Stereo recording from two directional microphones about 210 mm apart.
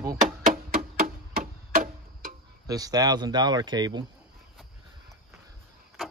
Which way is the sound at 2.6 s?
15° right (ahead or behind).